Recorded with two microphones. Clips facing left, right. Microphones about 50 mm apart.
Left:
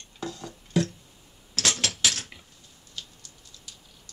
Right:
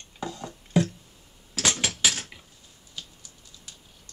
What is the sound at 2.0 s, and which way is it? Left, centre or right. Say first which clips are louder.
Dishes: right 1 dB; centre.